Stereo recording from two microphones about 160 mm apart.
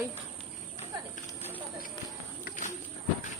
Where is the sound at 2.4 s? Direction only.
55° left (ahead or behind).